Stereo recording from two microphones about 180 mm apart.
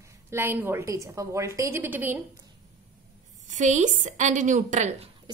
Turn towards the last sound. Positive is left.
turn(degrees=-40)  # may be behind; listen again after turning